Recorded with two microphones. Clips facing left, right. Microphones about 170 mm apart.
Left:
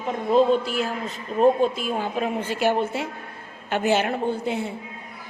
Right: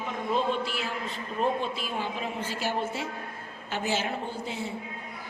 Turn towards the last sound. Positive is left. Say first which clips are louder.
# left 9 dB
turn(degrees=60)  # may be behind; listen again after turning